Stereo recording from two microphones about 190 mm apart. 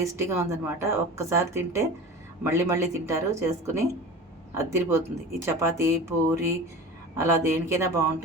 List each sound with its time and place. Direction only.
0.0 s a woman's voice: 15° right (ahead or behind)